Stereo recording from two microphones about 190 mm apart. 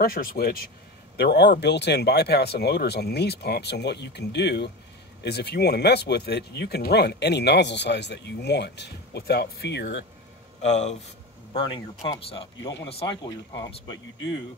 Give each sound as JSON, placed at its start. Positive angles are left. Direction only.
{"t": 0.0, "sound": "speech", "side_deg": 50}
{"t": 10.6, "sound": "speech", "side_deg": 35}